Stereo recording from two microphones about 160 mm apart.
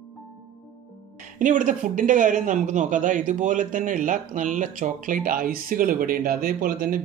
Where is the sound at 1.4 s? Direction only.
55° right (ahead or behind).